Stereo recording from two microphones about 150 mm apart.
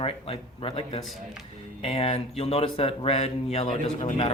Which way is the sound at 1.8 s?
40° left (ahead or behind).